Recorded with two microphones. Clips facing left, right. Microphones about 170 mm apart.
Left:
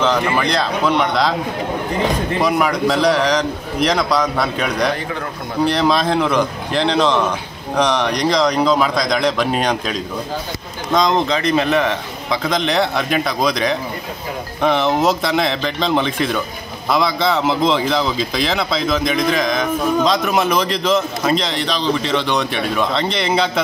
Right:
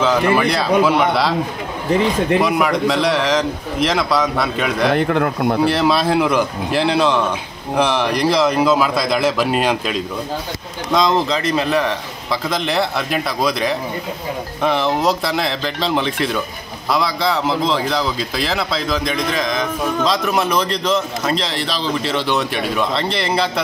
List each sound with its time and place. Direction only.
0.0 s a man's voice: 5° right (ahead or behind)
2.4 s a man's voice: centre (ahead or behind)
4.9 s a man's voice: 60° right (ahead or behind)
5.7 s a man's voice: 5° right (ahead or behind)